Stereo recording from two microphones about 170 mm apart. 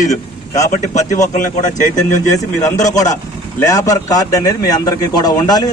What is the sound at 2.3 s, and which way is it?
A man's voice, 20° left (ahead or behind).